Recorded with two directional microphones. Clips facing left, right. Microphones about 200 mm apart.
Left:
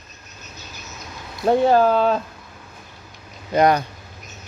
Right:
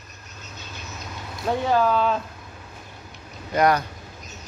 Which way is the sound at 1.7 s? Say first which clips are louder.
Left 4 dB; 40° left (ahead or behind).